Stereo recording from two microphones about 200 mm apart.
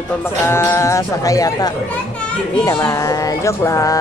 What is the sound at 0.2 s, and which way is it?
Music, 10° left (ahead or behind).